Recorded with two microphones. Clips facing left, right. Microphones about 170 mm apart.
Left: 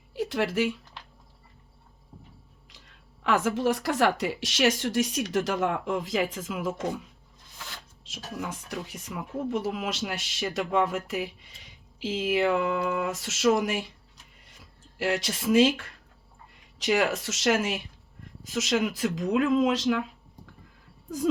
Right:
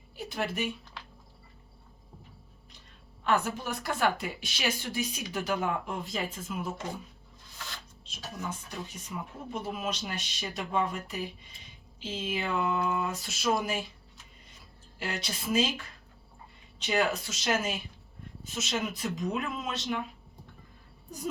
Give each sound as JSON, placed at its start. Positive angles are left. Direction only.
{"t": 0.1, "sound": "a sound", "side_deg": 85}
{"t": 3.2, "sound": "speech", "side_deg": 90}
{"t": 8.0, "sound": "speech", "side_deg": 85}
{"t": 14.4, "sound": "a sound", "side_deg": 80}
{"t": 16.7, "sound": "speech", "side_deg": 80}
{"t": 18.4, "sound": "speech", "side_deg": 90}